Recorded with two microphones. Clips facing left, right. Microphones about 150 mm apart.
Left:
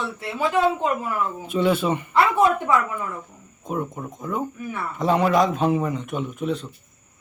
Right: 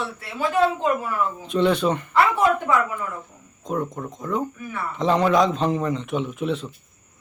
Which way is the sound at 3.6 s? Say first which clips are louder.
Right 1 dB; 5° left (ahead or behind).